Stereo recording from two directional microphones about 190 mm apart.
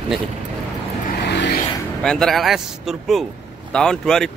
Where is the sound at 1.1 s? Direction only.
65° left (ahead or behind).